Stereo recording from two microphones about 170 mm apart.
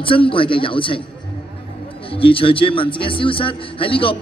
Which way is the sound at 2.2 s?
30° left (ahead or behind).